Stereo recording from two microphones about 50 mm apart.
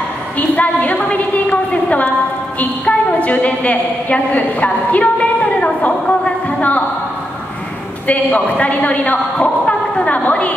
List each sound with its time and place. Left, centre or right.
0.4 s a woman's voice: left
8.1 s speech: left